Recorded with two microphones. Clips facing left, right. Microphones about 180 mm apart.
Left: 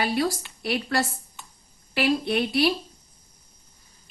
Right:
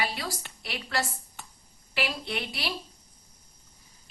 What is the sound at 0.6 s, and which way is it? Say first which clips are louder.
A woman's voice: left 7 dB; 60° left (ahead or behind).